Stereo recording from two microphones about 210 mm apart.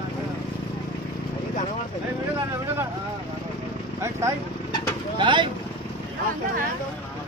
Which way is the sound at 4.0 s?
15° right (ahead or behind).